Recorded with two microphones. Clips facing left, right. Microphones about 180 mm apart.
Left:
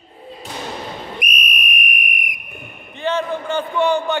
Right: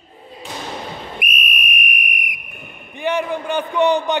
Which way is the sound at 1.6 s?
Centre (ahead or behind).